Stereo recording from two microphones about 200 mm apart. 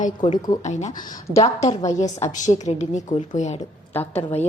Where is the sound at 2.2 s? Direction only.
35° left (ahead or behind).